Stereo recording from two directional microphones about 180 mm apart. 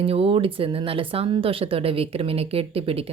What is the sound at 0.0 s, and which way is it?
Speech, 30° right (ahead or behind).